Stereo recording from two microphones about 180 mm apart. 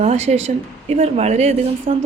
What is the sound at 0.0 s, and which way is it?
A woman's voice, 40° right (ahead or behind).